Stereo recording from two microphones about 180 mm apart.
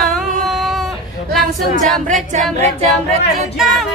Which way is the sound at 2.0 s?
45° right (ahead or behind).